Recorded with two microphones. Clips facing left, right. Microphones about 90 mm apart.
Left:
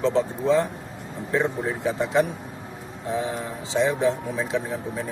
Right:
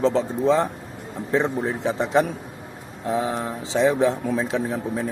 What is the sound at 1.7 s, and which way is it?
Speech, 30° right (ahead or behind).